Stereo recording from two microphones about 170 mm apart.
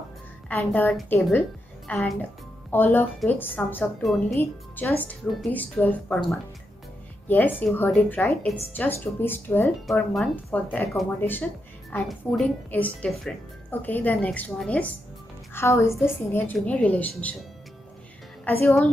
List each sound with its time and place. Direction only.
0.5 s a woman's voice: 10° left (ahead or behind)
4.0 s a woman's voice: centre (ahead or behind)
4.4 s a woman's voice: 10° left (ahead or behind)